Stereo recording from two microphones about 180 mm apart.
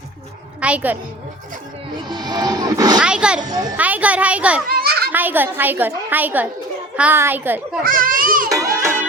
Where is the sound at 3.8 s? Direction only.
10° right (ahead or behind).